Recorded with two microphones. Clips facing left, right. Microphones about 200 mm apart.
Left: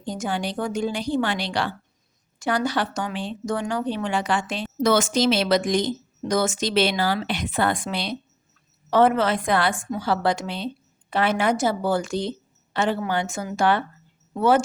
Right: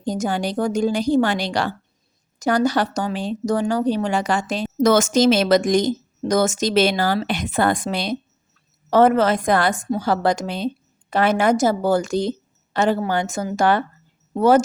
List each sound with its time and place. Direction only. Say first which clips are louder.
0.0 s a woman's voice: right 5 dB; 40° right (ahead or behind)